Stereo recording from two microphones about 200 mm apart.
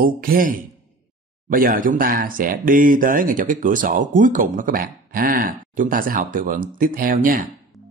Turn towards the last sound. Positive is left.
turn(degrees=-45)  # may be behind; listen again after turning